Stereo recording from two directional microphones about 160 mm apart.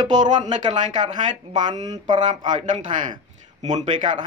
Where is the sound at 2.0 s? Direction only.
30° right (ahead or behind).